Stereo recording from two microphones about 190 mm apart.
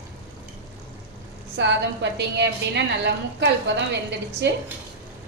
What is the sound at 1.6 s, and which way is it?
A woman's voice, 65° right (ahead or behind).